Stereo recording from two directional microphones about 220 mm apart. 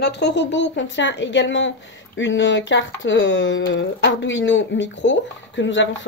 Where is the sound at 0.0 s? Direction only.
50° left (ahead or behind).